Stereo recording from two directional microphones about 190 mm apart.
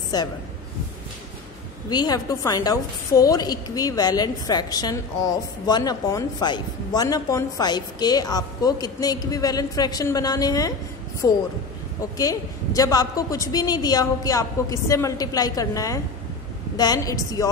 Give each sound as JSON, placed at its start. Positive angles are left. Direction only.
{"t": 0.1, "sound": "a woman's voice", "side_deg": 20}
{"t": 1.9, "sound": "a woman's voice", "side_deg": 20}